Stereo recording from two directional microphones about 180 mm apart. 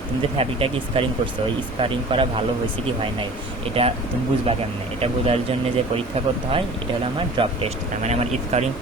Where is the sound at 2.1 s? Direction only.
30° right (ahead or behind).